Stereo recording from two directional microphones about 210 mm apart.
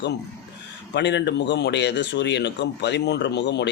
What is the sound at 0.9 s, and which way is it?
Speech, 55° left (ahead or behind).